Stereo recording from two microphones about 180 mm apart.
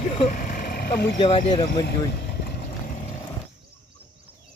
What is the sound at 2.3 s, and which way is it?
Boat, 70° left (ahead or behind).